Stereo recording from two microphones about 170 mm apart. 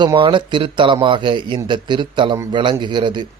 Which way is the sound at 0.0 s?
25° right (ahead or behind).